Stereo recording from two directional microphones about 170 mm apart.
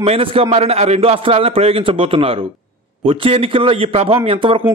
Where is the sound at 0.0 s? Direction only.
35° right (ahead or behind).